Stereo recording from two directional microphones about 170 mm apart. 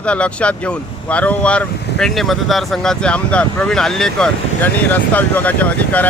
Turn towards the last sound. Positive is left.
turn(degrees=10)  # may be behind; listen again after turning